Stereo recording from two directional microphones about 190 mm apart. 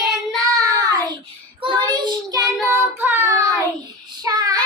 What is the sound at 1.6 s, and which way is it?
Child singing, 25° right (ahead or behind).